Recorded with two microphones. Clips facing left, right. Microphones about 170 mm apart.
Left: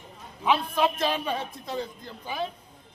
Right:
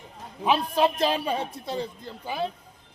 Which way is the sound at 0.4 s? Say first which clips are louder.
Right 2 dB; 40° right (ahead or behind).